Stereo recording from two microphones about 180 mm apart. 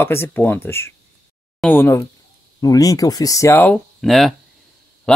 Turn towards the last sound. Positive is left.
turn(degrees=0)  # may be behind; listen again after turning